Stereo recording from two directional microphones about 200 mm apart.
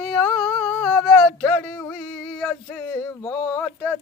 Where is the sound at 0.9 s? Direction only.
10° left (ahead or behind).